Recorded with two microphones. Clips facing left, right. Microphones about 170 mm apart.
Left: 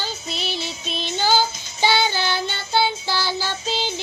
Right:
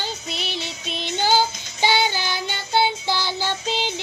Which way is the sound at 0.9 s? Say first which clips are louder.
Even; 15° right (ahead or behind).